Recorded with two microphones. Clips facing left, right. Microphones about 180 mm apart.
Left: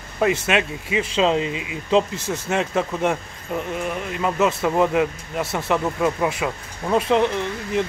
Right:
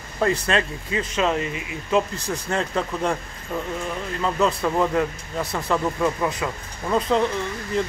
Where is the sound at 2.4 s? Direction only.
5° left (ahead or behind).